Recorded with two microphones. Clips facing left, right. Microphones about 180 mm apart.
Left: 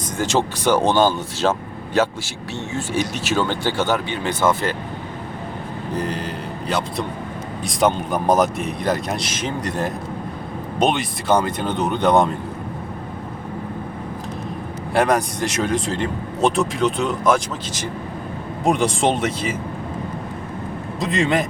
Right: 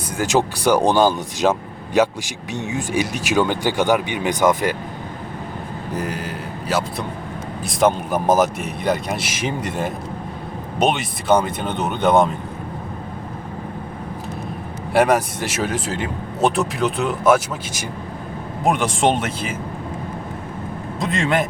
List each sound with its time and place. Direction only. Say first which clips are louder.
0.2 s speech: right 2 dB; 10° right (ahead or behind)
6.0 s speech: left 1 dB; 10° right (ahead or behind)
14.9 s speech: right 2 dB; 5° right (ahead or behind)
21.0 s speech: left 1 dB; centre (ahead or behind)